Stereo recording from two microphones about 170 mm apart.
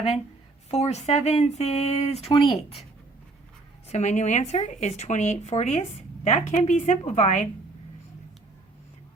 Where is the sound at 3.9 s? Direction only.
45° left (ahead or behind).